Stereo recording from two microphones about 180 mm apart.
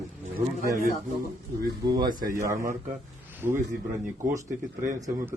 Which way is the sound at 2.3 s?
15° right (ahead or behind).